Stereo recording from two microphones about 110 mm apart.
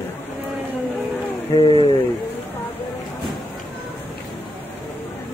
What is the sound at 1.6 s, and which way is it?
Speech, 55° left (ahead or behind).